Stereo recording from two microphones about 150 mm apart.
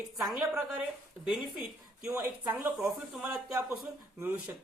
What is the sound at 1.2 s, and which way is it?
Speech, 5° right (ahead or behind).